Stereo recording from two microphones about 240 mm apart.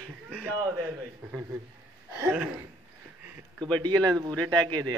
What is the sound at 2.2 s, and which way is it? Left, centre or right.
Speech, centre.